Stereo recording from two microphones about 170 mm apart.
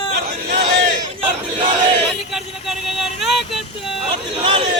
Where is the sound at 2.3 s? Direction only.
Centre (ahead or behind).